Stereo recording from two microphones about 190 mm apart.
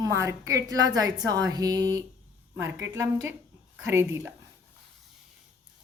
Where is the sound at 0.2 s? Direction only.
15° right (ahead or behind).